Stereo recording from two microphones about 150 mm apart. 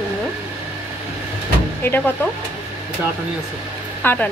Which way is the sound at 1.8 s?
15° left (ahead or behind).